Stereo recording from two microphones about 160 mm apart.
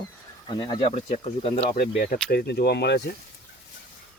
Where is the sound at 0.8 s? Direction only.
40° left (ahead or behind).